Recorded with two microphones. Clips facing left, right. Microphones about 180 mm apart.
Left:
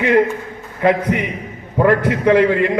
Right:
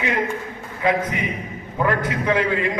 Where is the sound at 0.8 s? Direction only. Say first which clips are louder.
Left 6 dB; 60° left (ahead or behind).